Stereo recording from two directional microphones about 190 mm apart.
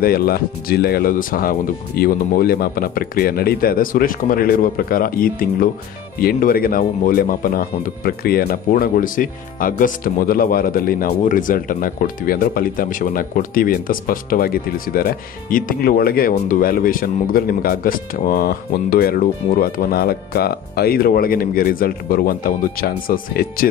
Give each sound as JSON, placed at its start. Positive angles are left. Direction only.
{"t": 0.0, "sound": "speech", "side_deg": 50}